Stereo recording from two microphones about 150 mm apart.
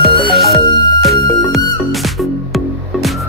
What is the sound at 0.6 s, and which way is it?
Music, 30° left (ahead or behind).